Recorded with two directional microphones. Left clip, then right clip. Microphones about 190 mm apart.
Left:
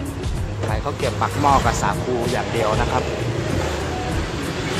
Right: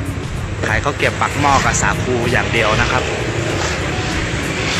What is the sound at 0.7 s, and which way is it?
Speech, 5° left (ahead or behind).